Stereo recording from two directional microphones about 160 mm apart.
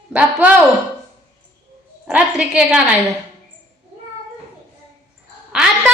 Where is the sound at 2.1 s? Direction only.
5° right (ahead or behind).